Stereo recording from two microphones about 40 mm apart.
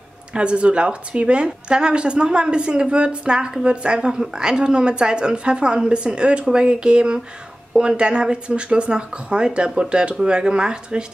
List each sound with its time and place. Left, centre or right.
0.3 s a woman's voice: right